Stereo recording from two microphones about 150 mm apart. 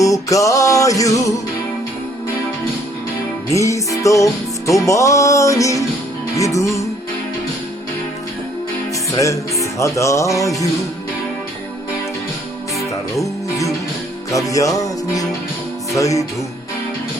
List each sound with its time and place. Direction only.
0.0 s music: 20° left (ahead or behind)
3.5 s music: 20° left (ahead or behind)
9.1 s music: 20° left (ahead or behind)
13.1 s music: 20° left (ahead or behind)